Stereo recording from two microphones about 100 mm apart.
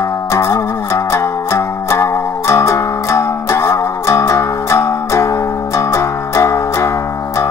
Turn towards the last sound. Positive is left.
turn(degrees=30)  # may be behind; listen again after turning